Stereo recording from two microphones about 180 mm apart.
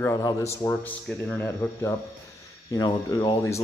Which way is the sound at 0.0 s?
20° left (ahead or behind).